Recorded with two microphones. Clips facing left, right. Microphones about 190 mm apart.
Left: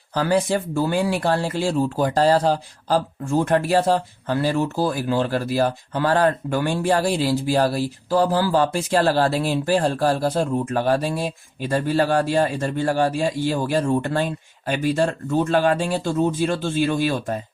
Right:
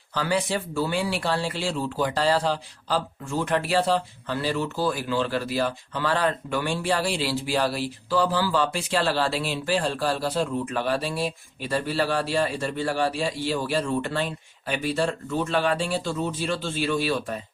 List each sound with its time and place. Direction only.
0.1 s speech: 45° left (ahead or behind)